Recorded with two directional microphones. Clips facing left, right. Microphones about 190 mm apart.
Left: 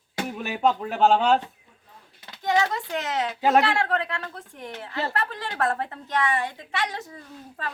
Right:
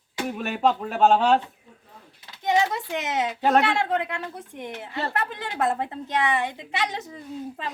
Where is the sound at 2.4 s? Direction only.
20° right (ahead or behind).